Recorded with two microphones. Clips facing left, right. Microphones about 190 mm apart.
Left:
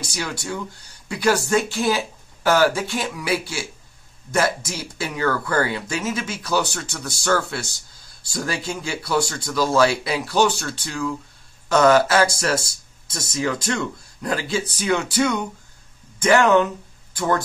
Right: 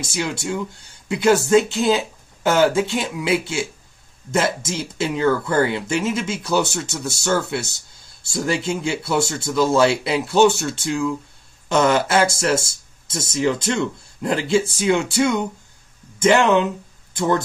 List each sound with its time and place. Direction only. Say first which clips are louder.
0.0 s speech: right 4 dB; 25° right (ahead or behind)